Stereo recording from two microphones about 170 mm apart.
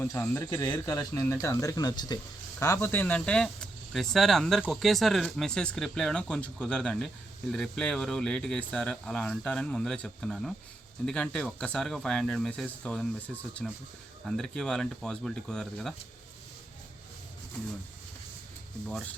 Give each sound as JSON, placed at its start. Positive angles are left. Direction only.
{"t": 0.0, "sound": "speech", "side_deg": 15}